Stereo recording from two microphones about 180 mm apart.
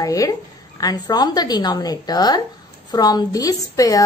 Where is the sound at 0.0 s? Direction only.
20° left (ahead or behind).